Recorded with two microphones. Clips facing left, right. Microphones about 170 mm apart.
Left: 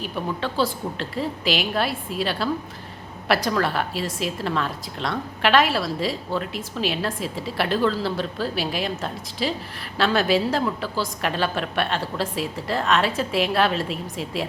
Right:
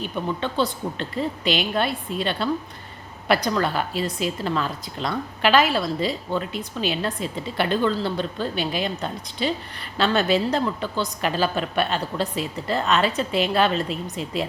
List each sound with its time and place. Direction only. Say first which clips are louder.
0.0 s a woman's voice: right 1 dB; centre (ahead or behind)